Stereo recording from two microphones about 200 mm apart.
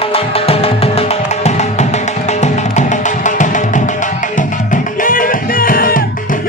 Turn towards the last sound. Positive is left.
turn(degrees=45)  # may be behind; listen again after turning